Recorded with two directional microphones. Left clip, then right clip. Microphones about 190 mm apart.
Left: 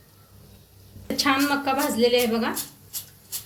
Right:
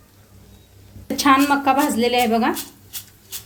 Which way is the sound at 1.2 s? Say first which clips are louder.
Right 7 dB; 50° right (ahead or behind).